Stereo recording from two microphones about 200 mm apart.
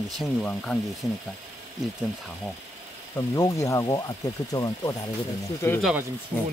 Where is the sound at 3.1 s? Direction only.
15° left (ahead or behind).